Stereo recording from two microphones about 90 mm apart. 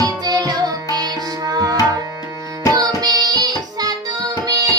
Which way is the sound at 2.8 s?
45° right (ahead or behind).